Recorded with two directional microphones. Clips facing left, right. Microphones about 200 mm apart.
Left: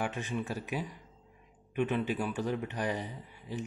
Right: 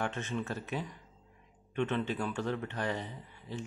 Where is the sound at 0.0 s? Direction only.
15° left (ahead or behind).